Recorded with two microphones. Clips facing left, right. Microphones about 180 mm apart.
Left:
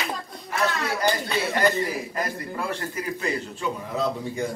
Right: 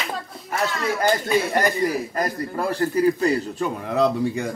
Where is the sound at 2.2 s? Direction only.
35° right (ahead or behind).